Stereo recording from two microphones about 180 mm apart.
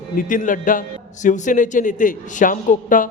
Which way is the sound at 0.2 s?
50° left (ahead or behind).